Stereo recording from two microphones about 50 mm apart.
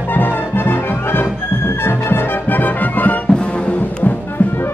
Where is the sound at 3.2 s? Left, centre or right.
Centre.